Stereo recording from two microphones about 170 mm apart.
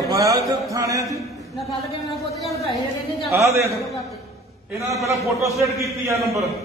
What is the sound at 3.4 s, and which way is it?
Speech, 20° right (ahead or behind).